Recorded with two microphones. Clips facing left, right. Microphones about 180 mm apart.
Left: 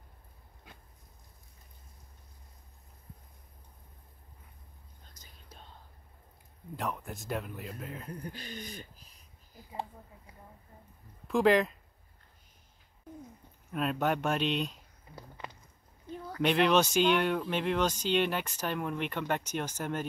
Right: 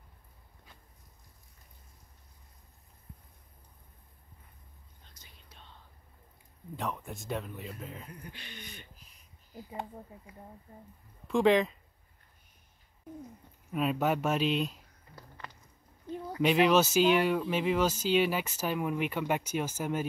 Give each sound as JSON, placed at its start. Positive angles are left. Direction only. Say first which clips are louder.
{"t": 5.0, "sound": "whispering", "louder": "left 1 dB", "side_deg": 45}
{"t": 6.8, "sound": "speech", "louder": "even", "side_deg": 0}
{"t": 8.1, "sound": "speech", "louder": "left 6 dB", "side_deg": 40}
{"t": 11.2, "sound": "speech", "louder": "even", "side_deg": 0}
{"t": 13.7, "sound": "speech", "louder": "right 1 dB", "side_deg": -5}
{"t": 15.1, "sound": "a sound", "louder": "left 3 dB", "side_deg": 15}
{"t": 16.3, "sound": "speech", "louder": "right 1 dB", "side_deg": -5}